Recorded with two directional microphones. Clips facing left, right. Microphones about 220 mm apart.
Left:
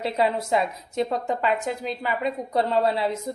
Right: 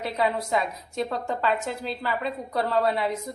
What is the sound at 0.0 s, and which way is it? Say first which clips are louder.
A woman's voice: left 2 dB; 30° left (ahead or behind).